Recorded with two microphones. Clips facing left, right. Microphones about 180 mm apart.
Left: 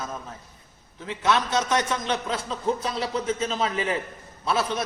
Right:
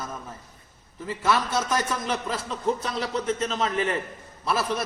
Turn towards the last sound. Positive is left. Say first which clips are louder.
# left 1 dB
turn(degrees=0)  # may be behind; listen again after turning